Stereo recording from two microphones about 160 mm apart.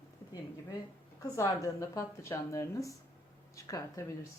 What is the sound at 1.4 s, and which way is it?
Speech, 20° left (ahead or behind).